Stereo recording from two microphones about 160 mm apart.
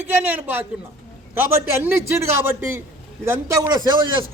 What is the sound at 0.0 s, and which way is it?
Speech, 10° right (ahead or behind).